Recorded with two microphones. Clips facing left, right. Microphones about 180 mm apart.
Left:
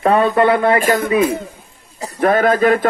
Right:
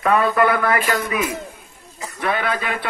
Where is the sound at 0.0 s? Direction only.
30° left (ahead or behind).